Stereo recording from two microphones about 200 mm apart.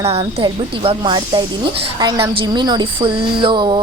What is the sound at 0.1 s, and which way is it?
A woman's voice, 25° right (ahead or behind).